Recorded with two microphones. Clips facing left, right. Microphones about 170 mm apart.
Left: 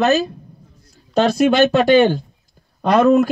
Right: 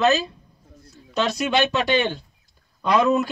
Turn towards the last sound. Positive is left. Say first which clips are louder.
# left 6 dB
turn(degrees=50)  # may be behind; listen again after turning